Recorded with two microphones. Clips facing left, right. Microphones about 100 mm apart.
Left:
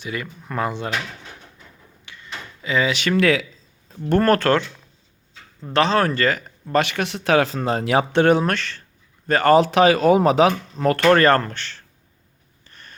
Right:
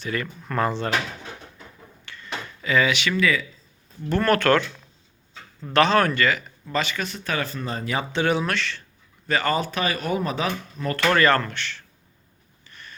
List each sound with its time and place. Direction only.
0.0 s speech: 10° left (ahead or behind)
2.0 s a sound: 15° left (ahead or behind)
2.9 s speech: 40° left (ahead or behind)
3.2 s speech: 70° left (ahead or behind)
4.1 s speech: 40° left (ahead or behind)
5.7 s a man's voice: 30° left (ahead or behind); by 9.6 s 50° left (ahead or behind)
9.6 s speech: 90° left
11.0 s speech: 40° left (ahead or behind)
12.6 s a sound: 40° left (ahead or behind)